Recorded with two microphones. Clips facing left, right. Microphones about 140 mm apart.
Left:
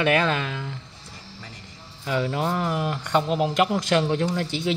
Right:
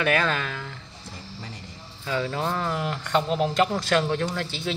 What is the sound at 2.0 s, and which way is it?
Speech, 15° left (ahead or behind).